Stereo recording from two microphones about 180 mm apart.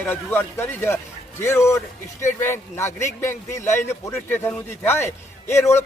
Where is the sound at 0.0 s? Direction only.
10° left (ahead or behind).